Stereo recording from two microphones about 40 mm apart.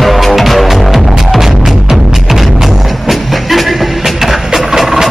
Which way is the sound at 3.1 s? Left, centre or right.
Centre.